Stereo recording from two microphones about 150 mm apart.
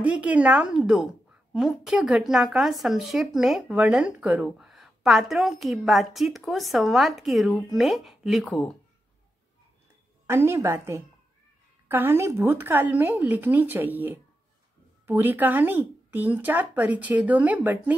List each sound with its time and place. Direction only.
0.0 s speech: 10° right (ahead or behind)
10.2 s speech: 15° right (ahead or behind)